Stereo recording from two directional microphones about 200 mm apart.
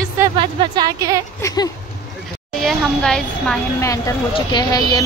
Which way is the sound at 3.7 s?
15° left (ahead or behind).